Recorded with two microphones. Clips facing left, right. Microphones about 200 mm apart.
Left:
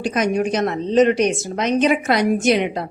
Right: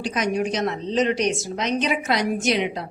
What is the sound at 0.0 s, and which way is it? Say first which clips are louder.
A woman's voice: left 4 dB; 50° left (ahead or behind).